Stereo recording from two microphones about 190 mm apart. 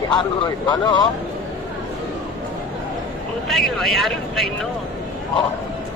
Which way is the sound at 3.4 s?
Centre (ahead or behind).